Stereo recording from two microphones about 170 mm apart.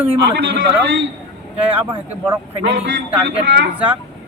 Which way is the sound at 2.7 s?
90° right.